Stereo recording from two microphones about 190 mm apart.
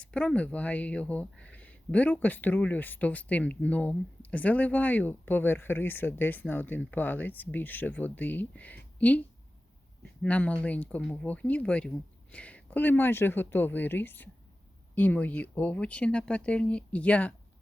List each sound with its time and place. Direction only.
0.0 s speech: 5° left (ahead or behind)
10.2 s speech: 5° left (ahead or behind)